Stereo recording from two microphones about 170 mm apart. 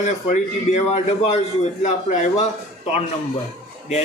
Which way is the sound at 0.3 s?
40° left (ahead or behind).